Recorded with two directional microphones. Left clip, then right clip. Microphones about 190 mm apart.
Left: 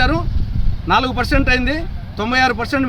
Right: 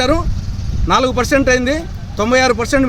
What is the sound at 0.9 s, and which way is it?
A man's voice, centre (ahead or behind).